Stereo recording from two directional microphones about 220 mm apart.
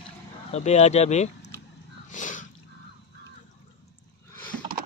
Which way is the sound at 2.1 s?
35° left (ahead or behind).